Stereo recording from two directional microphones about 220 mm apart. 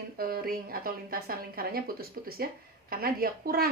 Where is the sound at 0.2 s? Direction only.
45° right (ahead or behind).